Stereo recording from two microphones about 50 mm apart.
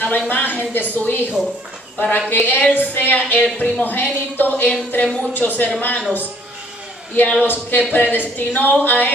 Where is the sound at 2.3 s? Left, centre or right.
Left.